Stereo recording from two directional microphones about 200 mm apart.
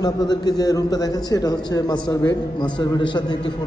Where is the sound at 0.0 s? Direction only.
20° left (ahead or behind).